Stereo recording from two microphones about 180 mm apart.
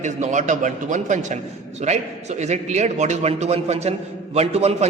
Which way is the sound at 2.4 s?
40° right (ahead or behind).